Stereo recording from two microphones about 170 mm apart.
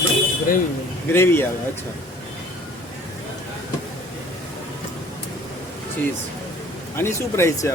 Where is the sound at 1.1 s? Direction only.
15° left (ahead or behind).